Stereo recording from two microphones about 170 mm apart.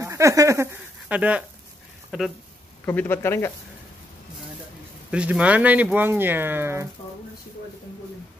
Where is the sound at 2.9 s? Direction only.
10° left (ahead or behind).